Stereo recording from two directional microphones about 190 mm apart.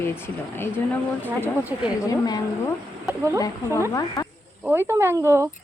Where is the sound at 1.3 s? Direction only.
10° right (ahead or behind).